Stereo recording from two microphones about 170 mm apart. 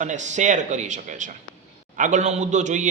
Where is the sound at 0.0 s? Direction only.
45° right (ahead or behind).